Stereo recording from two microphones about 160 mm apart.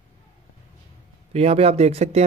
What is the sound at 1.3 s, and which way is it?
Speech, 40° right (ahead or behind).